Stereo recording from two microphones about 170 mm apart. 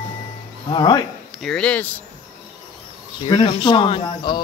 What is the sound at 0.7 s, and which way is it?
Speech, 25° left (ahead or behind).